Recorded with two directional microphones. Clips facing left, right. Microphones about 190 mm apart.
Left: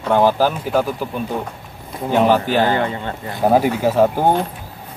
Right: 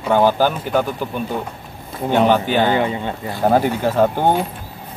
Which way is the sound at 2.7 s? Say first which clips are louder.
Right 1 dB; 15° right (ahead or behind).